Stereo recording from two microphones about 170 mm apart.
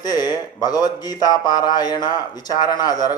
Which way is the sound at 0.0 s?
25° left (ahead or behind).